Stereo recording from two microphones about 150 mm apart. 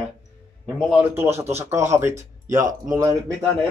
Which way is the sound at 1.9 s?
20° right (ahead or behind).